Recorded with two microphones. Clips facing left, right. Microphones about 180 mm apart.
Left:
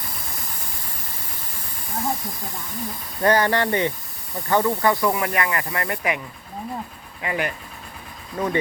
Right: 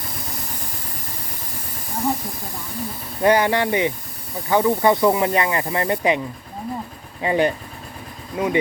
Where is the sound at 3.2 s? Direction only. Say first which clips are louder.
Right 2 dB; 10° right (ahead or behind); by 7.5 s 25° right (ahead or behind).